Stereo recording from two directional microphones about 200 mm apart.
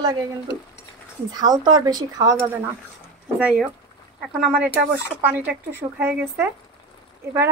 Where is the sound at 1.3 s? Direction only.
20° right (ahead or behind).